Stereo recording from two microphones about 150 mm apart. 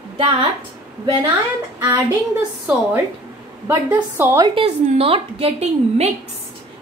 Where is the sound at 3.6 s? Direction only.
15° right (ahead or behind).